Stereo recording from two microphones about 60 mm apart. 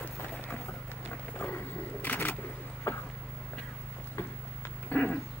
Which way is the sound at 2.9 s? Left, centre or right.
Left.